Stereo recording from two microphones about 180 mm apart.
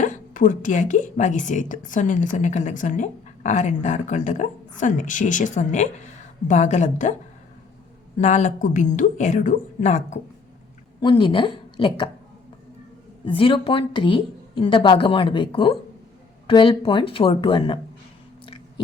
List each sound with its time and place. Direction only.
0.0 s a woman's voice: 45° left (ahead or behind)
8.2 s a woman's voice: 40° left (ahead or behind)
11.0 s speech: 25° left (ahead or behind)
13.2 s a woman's voice: 30° left (ahead or behind)